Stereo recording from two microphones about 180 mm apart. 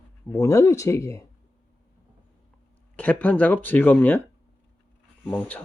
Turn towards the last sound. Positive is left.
turn(degrees=5)  # may be behind; listen again after turning